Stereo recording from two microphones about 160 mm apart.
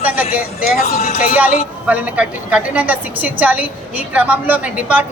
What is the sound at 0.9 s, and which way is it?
Speech, 45° left (ahead or behind).